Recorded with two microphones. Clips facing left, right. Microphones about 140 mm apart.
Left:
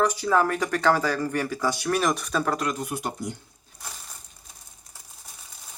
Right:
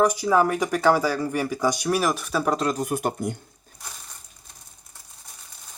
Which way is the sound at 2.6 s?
35° right (ahead or behind).